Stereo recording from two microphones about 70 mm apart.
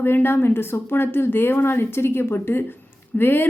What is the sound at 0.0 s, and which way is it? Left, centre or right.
A woman's voice, left.